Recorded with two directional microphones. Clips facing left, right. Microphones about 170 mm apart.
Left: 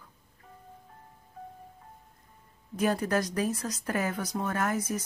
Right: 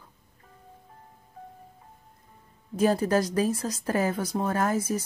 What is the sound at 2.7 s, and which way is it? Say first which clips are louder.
Speech: right 4 dB; 30° right (ahead or behind).